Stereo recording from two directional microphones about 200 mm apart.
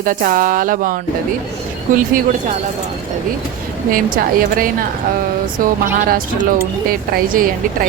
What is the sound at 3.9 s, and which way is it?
A woman's voice, 45° right (ahead or behind).